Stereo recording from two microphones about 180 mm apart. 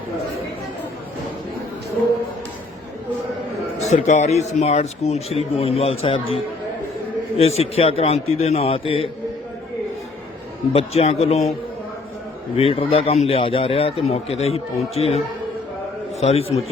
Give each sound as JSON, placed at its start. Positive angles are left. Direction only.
{"t": 3.8, "sound": "speech", "side_deg": 40}
{"t": 7.3, "sound": "speech", "side_deg": 35}
{"t": 10.7, "sound": "speech", "side_deg": 35}
{"t": 12.5, "sound": "speech", "side_deg": 30}
{"t": 16.2, "sound": "speech", "side_deg": 35}